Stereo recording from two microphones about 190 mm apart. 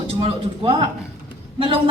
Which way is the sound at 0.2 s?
30° right (ahead or behind).